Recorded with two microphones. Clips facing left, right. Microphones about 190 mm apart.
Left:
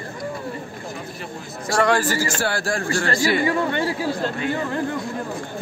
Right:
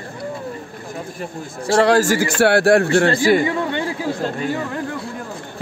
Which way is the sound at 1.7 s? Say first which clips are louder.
Right 5 dB; 35° right (ahead or behind).